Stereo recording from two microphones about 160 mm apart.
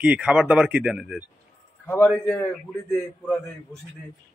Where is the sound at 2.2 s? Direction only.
10° left (ahead or behind).